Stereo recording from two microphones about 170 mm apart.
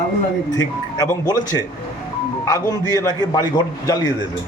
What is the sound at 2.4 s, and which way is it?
A man's voice, 20° left (ahead or behind).